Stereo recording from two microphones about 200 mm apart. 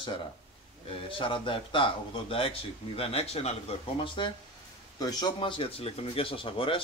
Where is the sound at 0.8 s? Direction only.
25° left (ahead or behind).